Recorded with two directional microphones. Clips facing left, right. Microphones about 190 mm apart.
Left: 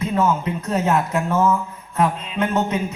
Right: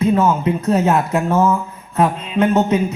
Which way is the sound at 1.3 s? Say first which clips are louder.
Right 3 dB; 40° right (ahead or behind).